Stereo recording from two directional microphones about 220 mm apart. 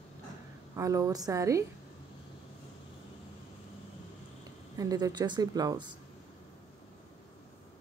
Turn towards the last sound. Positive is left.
turn(degrees=-20)  # may be behind; listen again after turning